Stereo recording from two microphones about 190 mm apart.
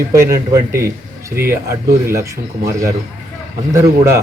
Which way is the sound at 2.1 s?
15° right (ahead or behind).